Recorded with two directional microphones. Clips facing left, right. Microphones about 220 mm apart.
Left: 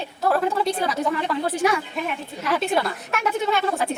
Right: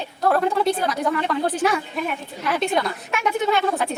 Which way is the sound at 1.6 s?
10° left (ahead or behind).